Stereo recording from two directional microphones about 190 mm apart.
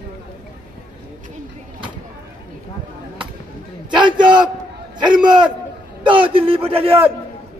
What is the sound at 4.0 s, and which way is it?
A man's voice, 25° right (ahead or behind).